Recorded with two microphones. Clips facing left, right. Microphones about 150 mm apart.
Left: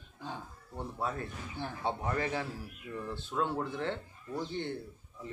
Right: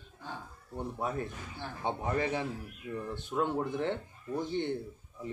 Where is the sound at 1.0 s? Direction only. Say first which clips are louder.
Right 1 dB; 20° right (ahead or behind).